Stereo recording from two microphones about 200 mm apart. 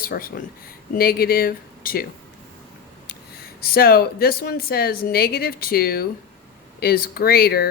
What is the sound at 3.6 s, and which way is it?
Speech, 50° left (ahead or behind).